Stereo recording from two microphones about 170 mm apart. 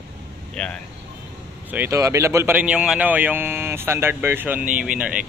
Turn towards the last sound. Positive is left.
turn(degrees=-5)  # may be behind; listen again after turning